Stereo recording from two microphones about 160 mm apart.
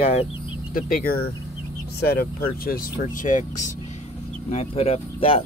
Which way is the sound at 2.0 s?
75° left (ahead or behind).